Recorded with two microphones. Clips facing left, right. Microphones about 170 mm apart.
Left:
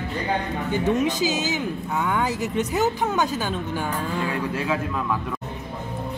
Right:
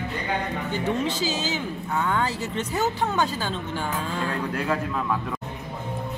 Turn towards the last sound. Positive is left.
turn(degrees=0)  # may be behind; listen again after turning